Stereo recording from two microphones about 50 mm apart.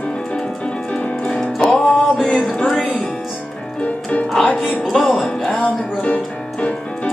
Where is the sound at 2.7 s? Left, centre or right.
Centre.